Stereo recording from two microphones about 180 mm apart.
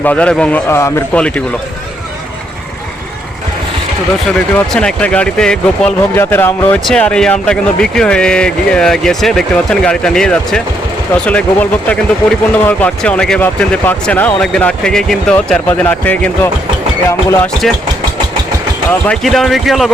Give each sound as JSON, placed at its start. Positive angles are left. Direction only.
{"t": 0.0, "sound": "a man's voice", "side_deg": 5}
{"t": 4.4, "sound": "a man's voice", "side_deg": 5}
{"t": 18.9, "sound": "speech", "side_deg": 5}